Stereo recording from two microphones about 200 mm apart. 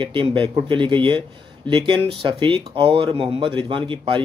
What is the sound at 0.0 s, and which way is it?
Speech, 25° right (ahead or behind).